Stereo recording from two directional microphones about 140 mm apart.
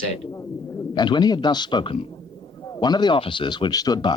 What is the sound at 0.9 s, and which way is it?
Speech, 30° left (ahead or behind).